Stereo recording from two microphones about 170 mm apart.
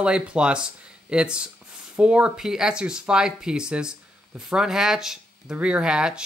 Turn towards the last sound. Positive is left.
turn(degrees=-5)  # may be behind; listen again after turning